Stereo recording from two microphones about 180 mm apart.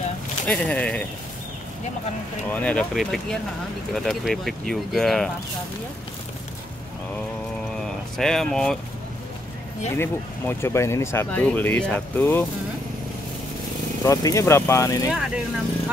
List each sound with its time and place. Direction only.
0.5 s speech: 5° left (ahead or behind)
2.5 s speech: 5° left (ahead or behind)
8.2 s speech: 5° left (ahead or behind)
9.9 s speech: 15° left (ahead or behind)
14.0 s speech: 20° left (ahead or behind)
15.0 s speech: 5° right (ahead or behind)